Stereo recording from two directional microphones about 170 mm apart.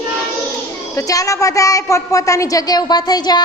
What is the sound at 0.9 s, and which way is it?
A woman's voice, 20° left (ahead or behind).